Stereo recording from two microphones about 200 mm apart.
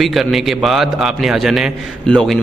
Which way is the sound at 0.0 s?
Centre (ahead or behind).